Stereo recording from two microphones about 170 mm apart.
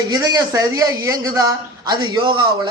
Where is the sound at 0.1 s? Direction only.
20° right (ahead or behind).